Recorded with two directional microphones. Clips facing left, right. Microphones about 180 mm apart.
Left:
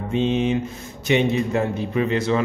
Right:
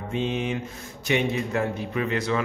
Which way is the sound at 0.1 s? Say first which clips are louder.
Left 7 dB; 25° left (ahead or behind).